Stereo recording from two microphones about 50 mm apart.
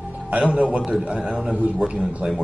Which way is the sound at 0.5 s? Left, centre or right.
Right.